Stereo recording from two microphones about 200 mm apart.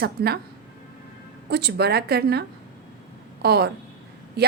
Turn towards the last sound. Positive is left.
turn(degrees=-55)  # may be behind; listen again after turning